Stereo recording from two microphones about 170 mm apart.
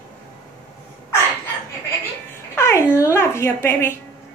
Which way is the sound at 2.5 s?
15° left (ahead or behind).